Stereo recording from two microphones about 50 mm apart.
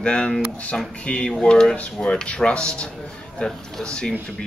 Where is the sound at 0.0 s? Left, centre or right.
Centre.